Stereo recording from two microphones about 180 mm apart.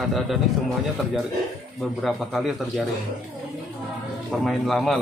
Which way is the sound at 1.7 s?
Centre (ahead or behind).